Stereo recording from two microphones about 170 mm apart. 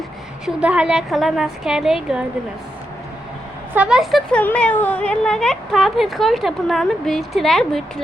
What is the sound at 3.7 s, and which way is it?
Speech, 5° right (ahead or behind).